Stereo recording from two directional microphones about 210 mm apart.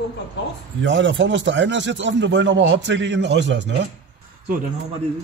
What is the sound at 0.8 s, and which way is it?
Speech, 60° right (ahead or behind).